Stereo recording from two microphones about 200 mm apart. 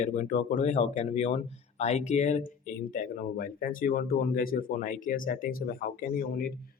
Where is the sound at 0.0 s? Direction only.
40° left (ahead or behind).